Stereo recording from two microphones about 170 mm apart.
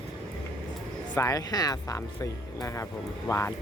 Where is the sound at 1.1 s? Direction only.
20° left (ahead or behind).